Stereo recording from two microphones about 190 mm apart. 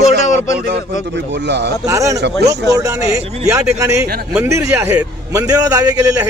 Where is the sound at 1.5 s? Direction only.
65° right (ahead or behind).